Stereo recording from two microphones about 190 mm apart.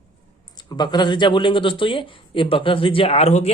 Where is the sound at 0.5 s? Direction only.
20° left (ahead or behind).